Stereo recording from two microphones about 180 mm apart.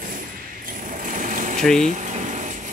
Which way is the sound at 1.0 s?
45° right (ahead or behind).